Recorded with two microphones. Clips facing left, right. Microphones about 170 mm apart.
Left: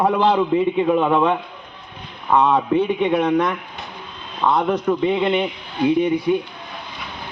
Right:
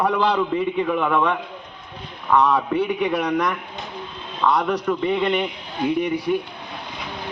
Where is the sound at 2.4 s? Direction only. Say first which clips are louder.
Left 4 dB; 25° left (ahead or behind).